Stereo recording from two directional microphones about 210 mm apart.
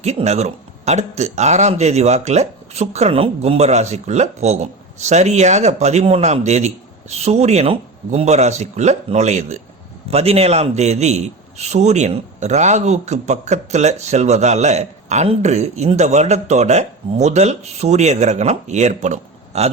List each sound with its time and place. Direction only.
0.0 s a man's voice: 30° right (ahead or behind)